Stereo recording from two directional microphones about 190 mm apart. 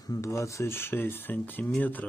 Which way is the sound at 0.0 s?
15° left (ahead or behind).